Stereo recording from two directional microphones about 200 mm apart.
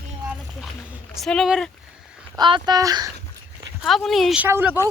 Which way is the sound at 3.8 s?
Centre (ahead or behind).